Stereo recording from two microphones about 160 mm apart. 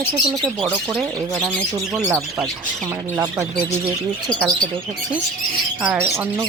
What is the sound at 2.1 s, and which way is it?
Speech, 20° right (ahead or behind).